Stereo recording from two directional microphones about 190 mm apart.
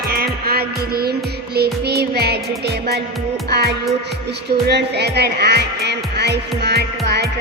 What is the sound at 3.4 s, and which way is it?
Speech, 60° right (ahead or behind).